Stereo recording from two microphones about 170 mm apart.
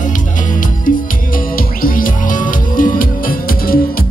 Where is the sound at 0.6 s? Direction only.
55° left (ahead or behind).